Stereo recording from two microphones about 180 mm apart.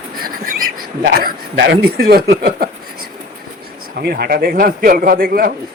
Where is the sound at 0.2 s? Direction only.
50° right (ahead or behind).